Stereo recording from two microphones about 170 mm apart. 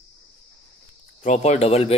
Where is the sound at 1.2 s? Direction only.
40° left (ahead or behind).